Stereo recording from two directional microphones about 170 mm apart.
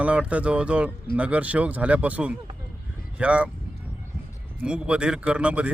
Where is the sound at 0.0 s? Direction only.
5° right (ahead or behind).